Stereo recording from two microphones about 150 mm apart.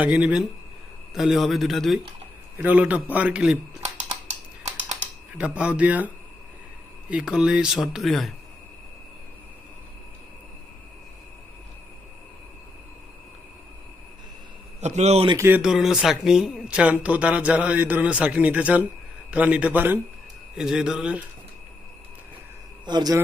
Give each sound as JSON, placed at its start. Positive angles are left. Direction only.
{"t": 0.0, "sound": "speech", "side_deg": -10}
{"t": 2.6, "sound": "speech", "side_deg": -10}
{"t": 5.4, "sound": "speech", "side_deg": -10}
{"t": 7.1, "sound": "speech", "side_deg": -5}
{"t": 14.8, "sound": "a man's voice", "side_deg": -50}
{"t": 15.4, "sound": "speech", "side_deg": -15}
{"t": 22.9, "sound": "a man's voice", "side_deg": -30}